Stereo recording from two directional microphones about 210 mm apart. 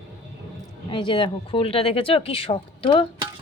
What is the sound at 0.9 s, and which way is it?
Speech, 25° left (ahead or behind).